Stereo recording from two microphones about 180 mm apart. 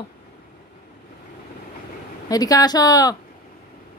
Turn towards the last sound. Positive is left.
turn(degrees=20)  # may be behind; listen again after turning